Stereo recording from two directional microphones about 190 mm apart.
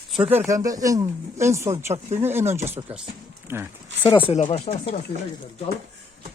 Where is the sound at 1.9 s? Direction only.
35° right (ahead or behind).